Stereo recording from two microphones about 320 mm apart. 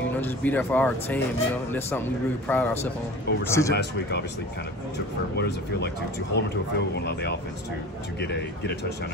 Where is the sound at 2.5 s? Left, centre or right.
Centre.